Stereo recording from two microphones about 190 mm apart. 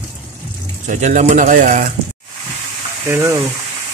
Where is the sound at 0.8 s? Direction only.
40° right (ahead or behind).